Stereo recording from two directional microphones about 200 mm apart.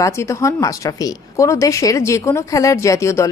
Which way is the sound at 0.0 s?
15° left (ahead or behind).